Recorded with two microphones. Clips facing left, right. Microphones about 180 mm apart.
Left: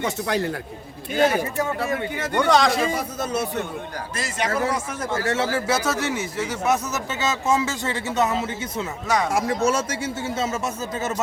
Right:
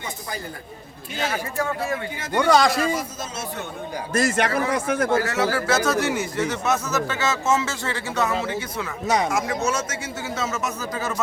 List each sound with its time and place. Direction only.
0.0 s speech: 80° left
2.3 s a man's voice: centre (ahead or behind)
2.9 s a man's voice: 60° left (ahead or behind)
4.1 s a man's voice: 50° right (ahead or behind)
5.2 s speech: 25° left (ahead or behind)
9.0 s speech: 20° right (ahead or behind)
9.6 s a man's voice: 30° left (ahead or behind)